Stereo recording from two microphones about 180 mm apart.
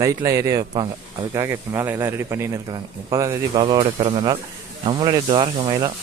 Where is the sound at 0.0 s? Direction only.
20° right (ahead or behind).